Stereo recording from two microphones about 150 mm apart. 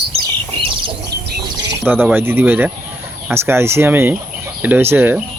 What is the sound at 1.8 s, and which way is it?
Speech, 15° right (ahead or behind).